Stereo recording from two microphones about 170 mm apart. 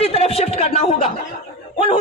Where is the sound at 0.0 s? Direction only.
35° left (ahead or behind).